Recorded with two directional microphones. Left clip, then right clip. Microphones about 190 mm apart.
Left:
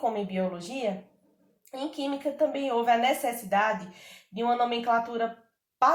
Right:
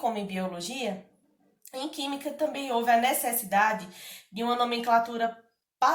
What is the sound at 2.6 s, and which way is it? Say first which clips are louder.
Speech: right 2 dB; 20° left (ahead or behind).